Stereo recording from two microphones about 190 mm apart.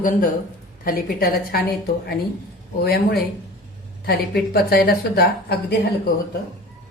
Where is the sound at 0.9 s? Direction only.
50° left (ahead or behind).